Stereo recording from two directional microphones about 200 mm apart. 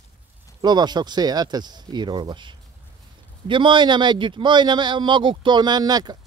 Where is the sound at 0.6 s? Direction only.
20° right (ahead or behind).